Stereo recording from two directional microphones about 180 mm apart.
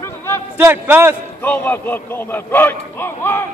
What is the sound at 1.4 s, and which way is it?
A man's voice, 10° left (ahead or behind).